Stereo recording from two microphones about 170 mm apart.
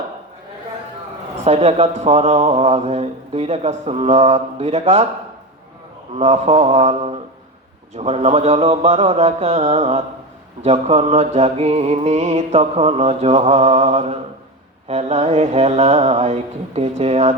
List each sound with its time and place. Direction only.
1.5 s a man's voice: 40° right (ahead or behind)
6.1 s a man's voice: 40° right (ahead or behind)